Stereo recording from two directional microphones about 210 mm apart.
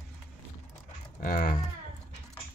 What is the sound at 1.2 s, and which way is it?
Speech, 40° left (ahead or behind).